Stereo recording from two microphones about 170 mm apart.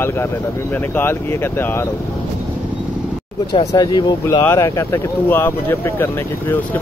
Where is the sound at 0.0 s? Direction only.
15° left (ahead or behind).